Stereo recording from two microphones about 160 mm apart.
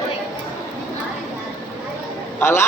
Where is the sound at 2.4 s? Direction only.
15° left (ahead or behind).